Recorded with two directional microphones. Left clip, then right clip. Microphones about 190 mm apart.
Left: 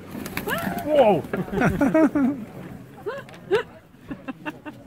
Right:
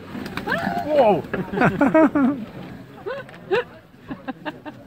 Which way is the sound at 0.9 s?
40° left (ahead or behind).